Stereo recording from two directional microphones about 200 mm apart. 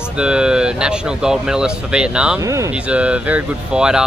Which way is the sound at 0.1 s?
5° right (ahead or behind).